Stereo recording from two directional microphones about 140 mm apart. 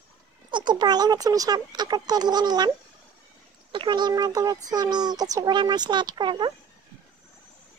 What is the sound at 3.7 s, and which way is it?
Speech, 35° right (ahead or behind).